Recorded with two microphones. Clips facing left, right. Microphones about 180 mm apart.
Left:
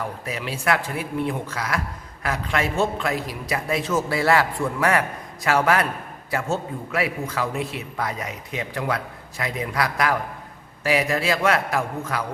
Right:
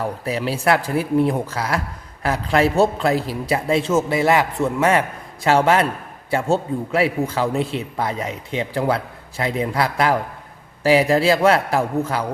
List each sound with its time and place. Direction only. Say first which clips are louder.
0.0 s a man's voice: right 6 dB; 30° right (ahead or behind)